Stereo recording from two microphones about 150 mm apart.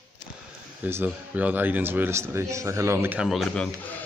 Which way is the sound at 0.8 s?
10° right (ahead or behind).